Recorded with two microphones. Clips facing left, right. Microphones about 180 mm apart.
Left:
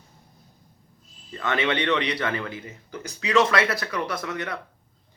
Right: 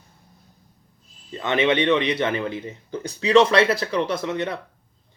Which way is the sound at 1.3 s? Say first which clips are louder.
Right 5 dB; 20° right (ahead or behind).